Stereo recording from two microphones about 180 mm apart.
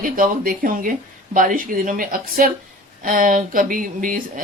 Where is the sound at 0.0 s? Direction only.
50° right (ahead or behind).